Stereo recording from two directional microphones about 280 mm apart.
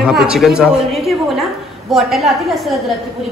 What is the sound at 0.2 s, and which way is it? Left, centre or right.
A woman's voice, centre.